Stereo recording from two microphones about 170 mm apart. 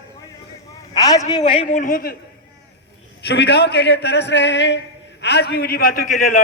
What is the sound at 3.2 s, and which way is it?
Speech, 85° left.